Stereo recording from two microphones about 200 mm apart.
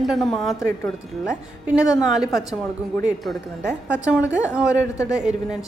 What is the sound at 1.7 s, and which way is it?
A woman's voice, 5° right (ahead or behind).